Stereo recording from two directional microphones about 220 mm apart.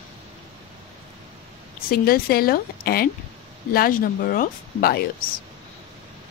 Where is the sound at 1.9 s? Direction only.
45° left (ahead or behind).